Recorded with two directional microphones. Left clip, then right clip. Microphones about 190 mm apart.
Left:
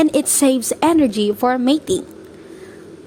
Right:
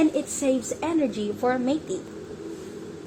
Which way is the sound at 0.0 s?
55° left (ahead or behind).